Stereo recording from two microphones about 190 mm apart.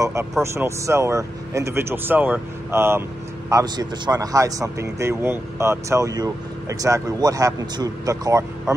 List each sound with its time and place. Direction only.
0.0 s speech: 15° right (ahead or behind)